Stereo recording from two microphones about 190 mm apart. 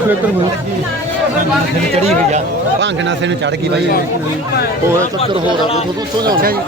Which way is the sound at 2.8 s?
70° right (ahead or behind).